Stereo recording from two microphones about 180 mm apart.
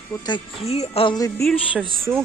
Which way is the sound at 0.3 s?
30° left (ahead or behind).